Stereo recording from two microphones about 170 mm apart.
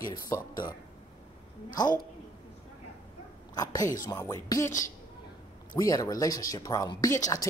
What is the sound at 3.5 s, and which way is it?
Speech, 20° left (ahead or behind).